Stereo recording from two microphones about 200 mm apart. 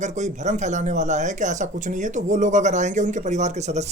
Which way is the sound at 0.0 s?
35° right (ahead or behind).